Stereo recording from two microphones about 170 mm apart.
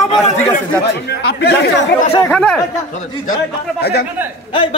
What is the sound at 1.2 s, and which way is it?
Speech, 75° left (ahead or behind).